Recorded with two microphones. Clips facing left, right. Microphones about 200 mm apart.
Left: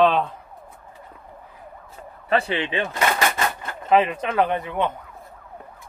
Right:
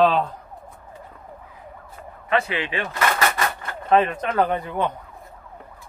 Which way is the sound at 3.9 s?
10° left (ahead or behind).